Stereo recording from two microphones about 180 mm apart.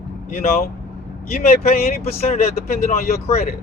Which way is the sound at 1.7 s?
55° left (ahead or behind).